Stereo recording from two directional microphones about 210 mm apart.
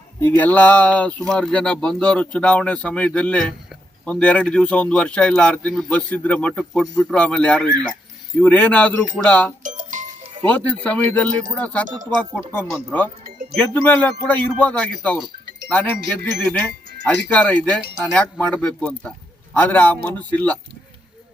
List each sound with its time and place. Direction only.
0.3 s speech: 10° left (ahead or behind)
9.6 s music: 35° right (ahead or behind)
10.4 s speech: 5° left (ahead or behind)